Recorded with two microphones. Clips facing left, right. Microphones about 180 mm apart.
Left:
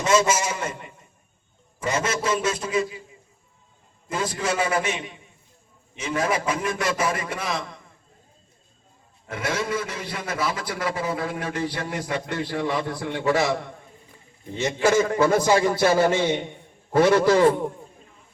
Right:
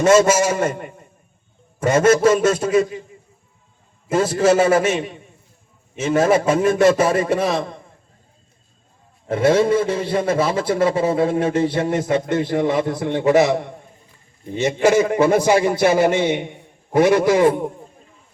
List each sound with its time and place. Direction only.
0.0 s a man's voice: 50° right (ahead or behind)
4.1 s a man's voice: 45° right (ahead or behind)
6.2 s a man's voice: 40° right (ahead or behind)
9.2 s a man's voice: 30° right (ahead or behind)
14.8 s a man's voice: 20° right (ahead or behind)